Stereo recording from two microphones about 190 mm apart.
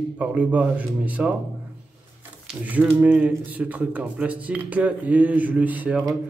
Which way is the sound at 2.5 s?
10° right (ahead or behind).